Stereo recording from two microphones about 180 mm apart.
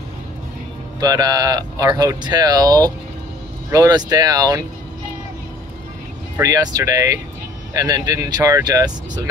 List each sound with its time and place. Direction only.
1.0 s speech: 20° right (ahead or behind)
6.3 s speech: 20° right (ahead or behind)